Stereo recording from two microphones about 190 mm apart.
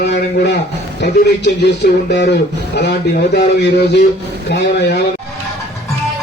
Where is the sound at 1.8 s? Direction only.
55° left (ahead or behind).